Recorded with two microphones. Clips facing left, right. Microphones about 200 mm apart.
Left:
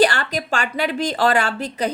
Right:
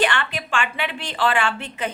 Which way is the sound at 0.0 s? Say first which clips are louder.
Left 5 dB; 40° left (ahead or behind).